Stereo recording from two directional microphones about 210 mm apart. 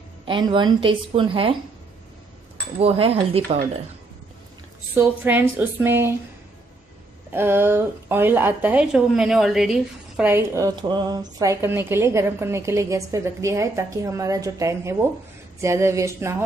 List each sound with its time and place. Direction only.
0.2 s a woman's voice: 25° right (ahead or behind)
2.8 s a woman's voice: 30° right (ahead or behind)
4.9 s a woman's voice: 10° right (ahead or behind)
7.3 s a woman's voice: 10° right (ahead or behind)